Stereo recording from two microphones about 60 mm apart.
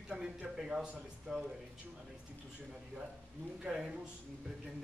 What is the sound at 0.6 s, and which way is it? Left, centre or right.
Speech, centre.